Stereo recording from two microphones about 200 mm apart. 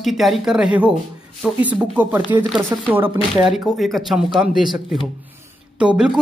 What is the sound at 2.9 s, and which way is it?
Speech, 25° right (ahead or behind).